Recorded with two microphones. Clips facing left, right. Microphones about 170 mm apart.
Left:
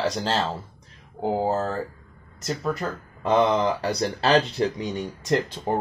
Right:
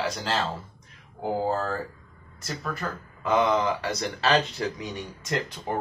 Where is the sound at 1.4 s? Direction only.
20° left (ahead or behind).